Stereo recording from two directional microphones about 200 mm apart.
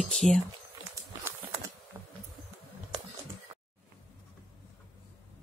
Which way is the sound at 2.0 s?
10° right (ahead or behind).